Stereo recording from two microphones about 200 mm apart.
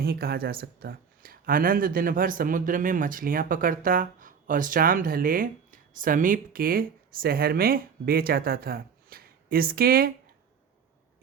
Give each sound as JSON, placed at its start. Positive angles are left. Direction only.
{"t": 0.0, "sound": "speech", "side_deg": -50}